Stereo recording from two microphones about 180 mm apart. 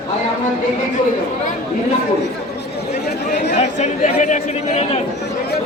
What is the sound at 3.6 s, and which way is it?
A man's voice, 40° left (ahead or behind).